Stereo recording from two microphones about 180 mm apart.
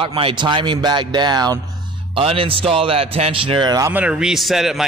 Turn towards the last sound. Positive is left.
turn(degrees=0)  # may be behind; listen again after turning